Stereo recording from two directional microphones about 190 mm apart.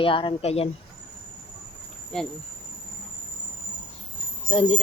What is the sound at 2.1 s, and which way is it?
Speech, 5° left (ahead or behind).